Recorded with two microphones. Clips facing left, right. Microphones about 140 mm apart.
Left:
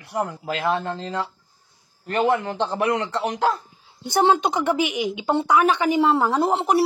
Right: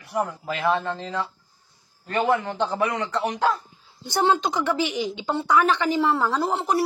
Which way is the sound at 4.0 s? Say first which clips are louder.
Left 3 dB; 20° left (ahead or behind).